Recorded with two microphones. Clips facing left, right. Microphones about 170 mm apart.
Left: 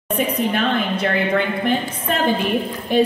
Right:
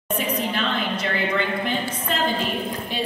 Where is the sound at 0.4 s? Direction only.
55° left (ahead or behind).